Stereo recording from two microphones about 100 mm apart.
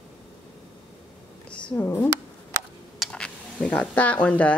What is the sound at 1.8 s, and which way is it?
Speech, 25° left (ahead or behind).